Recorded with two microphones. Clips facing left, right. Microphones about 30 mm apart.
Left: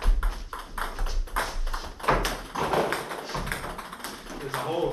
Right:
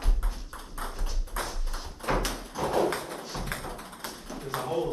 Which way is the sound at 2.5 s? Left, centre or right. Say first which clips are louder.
Left 1 dB; left.